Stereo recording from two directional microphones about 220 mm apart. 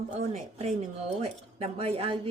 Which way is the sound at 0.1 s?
30° right (ahead or behind).